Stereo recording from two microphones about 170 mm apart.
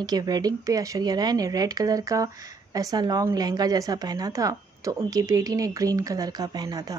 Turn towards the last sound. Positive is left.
turn(degrees=-20)  # may be behind; listen again after turning